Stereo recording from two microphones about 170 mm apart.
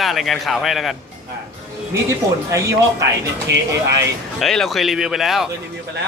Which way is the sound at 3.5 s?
80° right.